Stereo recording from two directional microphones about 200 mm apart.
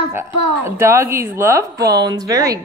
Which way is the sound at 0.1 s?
15° right (ahead or behind).